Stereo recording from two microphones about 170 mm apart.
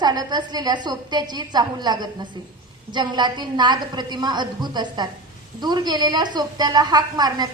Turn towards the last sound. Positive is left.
turn(degrees=-25)  # may be behind; listen again after turning